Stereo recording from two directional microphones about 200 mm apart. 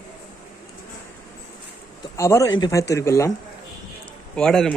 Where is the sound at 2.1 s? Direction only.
15° left (ahead or behind).